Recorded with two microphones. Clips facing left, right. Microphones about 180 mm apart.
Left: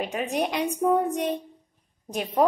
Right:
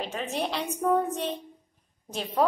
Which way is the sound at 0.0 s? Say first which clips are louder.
Left 4 dB; 15° left (ahead or behind).